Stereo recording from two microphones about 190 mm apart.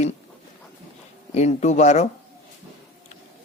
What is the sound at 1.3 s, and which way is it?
Speech, 35° left (ahead or behind).